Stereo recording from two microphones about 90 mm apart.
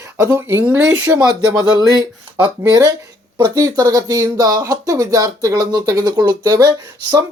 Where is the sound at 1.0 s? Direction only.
45° right (ahead or behind).